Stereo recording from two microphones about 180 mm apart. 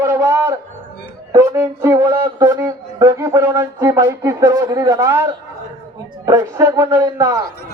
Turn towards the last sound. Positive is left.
turn(degrees=-20)  # may be behind; listen again after turning